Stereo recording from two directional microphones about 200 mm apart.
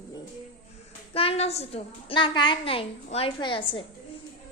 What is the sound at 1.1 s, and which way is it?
A woman's voice, 30° left (ahead or behind).